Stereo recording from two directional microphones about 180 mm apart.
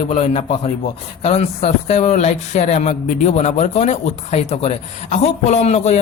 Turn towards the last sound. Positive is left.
turn(degrees=35)  # may be behind; listen again after turning